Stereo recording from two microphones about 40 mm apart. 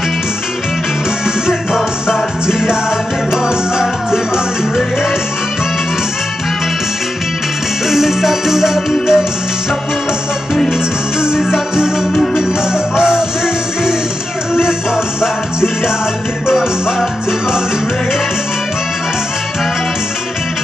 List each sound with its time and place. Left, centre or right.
1.5 s music: centre
7.9 s music: centre
10.7 s music: centre
14.5 s music: centre
16.4 s music: centre